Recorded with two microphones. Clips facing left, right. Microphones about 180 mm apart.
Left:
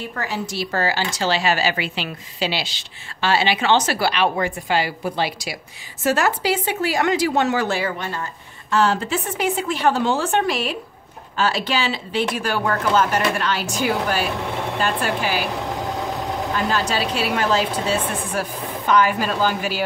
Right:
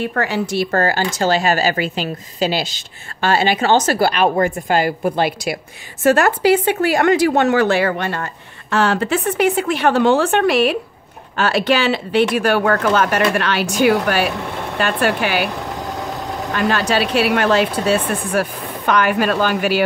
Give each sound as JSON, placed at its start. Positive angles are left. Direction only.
{"t": 0.0, "sound": "speech", "side_deg": -65}
{"t": 16.5, "sound": "speech", "side_deg": -70}